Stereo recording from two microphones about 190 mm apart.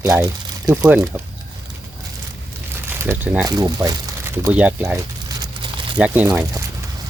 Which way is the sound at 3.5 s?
20° right (ahead or behind).